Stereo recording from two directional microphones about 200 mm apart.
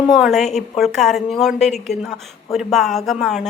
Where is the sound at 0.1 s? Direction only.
Centre (ahead or behind).